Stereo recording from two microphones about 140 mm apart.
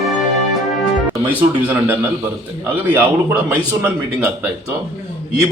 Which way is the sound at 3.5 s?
15° right (ahead or behind).